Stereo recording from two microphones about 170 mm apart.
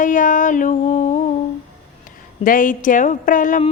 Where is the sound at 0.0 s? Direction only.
50° left (ahead or behind).